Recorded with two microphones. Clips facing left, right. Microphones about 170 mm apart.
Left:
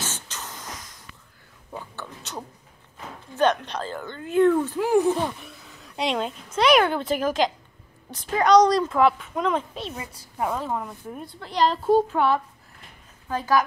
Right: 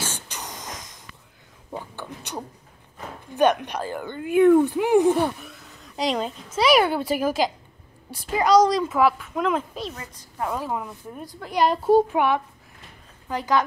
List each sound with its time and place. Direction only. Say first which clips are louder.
0.0 s a sound: right 2 dB; 15° right (ahead or behind)
3.3 s speech: right 2 dB; 10° right (ahead or behind)
5.4 s speech: right 1 dB; centre (ahead or behind)
9.9 s a woman's voice: left 2 dB; 10° left (ahead or behind)
10.5 s speech: even; 5° right (ahead or behind)